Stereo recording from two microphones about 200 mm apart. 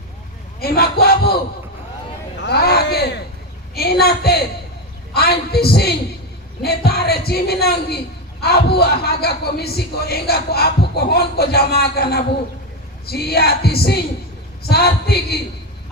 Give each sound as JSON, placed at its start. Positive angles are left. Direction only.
{"t": 0.6, "sound": "speech", "side_deg": 50}
{"t": 2.4, "sound": "a sound", "side_deg": 55}
{"t": 3.8, "sound": "a woman's voice", "side_deg": 50}